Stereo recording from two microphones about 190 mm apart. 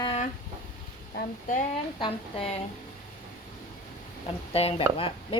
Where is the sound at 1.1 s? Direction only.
45° left (ahead or behind).